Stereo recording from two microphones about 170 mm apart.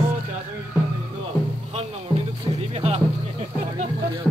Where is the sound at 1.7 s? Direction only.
35° right (ahead or behind).